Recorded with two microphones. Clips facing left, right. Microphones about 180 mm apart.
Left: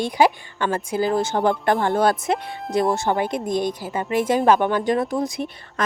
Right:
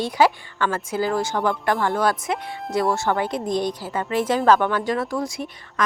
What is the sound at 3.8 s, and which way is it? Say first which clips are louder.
Speech: left 1 dB; 15° left (ahead or behind).